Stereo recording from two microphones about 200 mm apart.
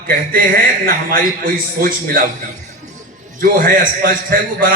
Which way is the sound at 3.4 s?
45° right (ahead or behind).